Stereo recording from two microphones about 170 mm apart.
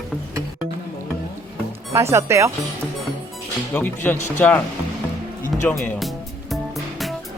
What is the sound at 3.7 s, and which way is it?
Speech, 10° left (ahead or behind).